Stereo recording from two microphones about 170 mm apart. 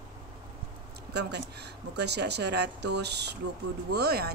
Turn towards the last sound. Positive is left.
turn(degrees=-70)  # may be behind; listen again after turning